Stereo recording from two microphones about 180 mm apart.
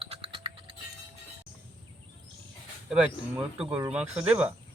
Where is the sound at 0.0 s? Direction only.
30° right (ahead or behind).